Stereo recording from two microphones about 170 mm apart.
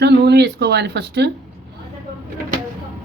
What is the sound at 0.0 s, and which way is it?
Speech, 75° right (ahead or behind).